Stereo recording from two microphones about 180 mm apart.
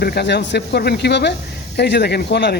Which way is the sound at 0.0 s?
65° left (ahead or behind).